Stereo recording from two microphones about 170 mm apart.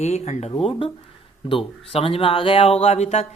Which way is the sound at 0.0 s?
40° left (ahead or behind).